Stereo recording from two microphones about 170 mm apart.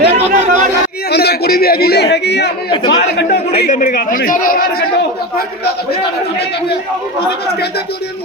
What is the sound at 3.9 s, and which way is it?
Speech, 60° left (ahead or behind).